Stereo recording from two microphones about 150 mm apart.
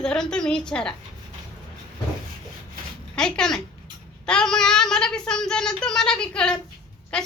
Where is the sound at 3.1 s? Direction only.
5° left (ahead or behind).